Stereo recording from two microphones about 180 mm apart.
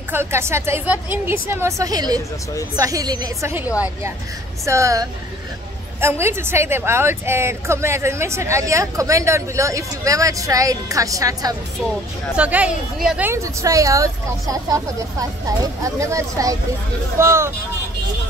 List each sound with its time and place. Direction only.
0.1 s a woman's voice: 15° right (ahead or behind)
12.4 s a woman's voice: 5° right (ahead or behind)